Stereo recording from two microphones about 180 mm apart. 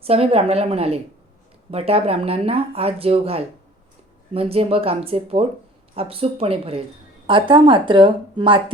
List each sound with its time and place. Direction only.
0.0 s speech: 35° right (ahead or behind)